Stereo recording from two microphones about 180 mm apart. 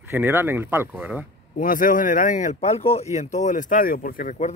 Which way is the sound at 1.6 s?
50° left (ahead or behind).